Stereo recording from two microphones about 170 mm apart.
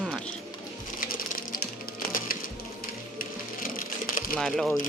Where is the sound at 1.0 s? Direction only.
55° left (ahead or behind).